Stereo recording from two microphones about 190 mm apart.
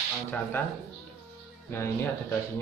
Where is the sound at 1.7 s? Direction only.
10° left (ahead or behind).